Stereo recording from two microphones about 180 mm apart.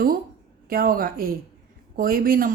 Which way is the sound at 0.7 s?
55° right (ahead or behind).